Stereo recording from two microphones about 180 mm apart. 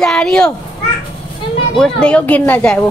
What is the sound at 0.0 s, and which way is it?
Speech, 5° left (ahead or behind).